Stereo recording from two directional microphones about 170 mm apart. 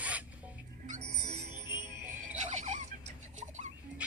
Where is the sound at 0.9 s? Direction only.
40° right (ahead or behind).